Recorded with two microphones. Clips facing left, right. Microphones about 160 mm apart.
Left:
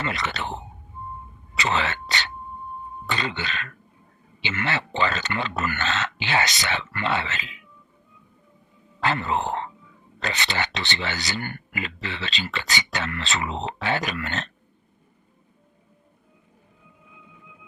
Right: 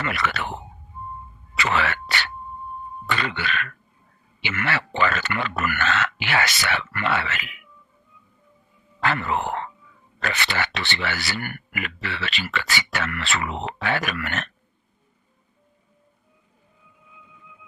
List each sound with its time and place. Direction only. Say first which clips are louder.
0.0 s speech: right 2 dB; 20° left (ahead or behind)
1.5 s a sound: right 1 dB; 20° left (ahead or behind)
3.1 s speech: right 2 dB; 20° left (ahead or behind)
9.0 s speech: even; 20° left (ahead or behind)